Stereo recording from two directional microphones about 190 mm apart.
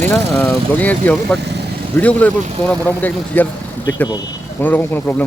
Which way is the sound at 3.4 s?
10° left (ahead or behind).